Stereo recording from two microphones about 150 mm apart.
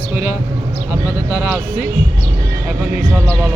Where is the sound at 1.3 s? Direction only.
15° right (ahead or behind).